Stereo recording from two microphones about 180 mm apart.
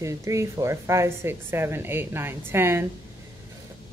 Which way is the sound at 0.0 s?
15° right (ahead or behind).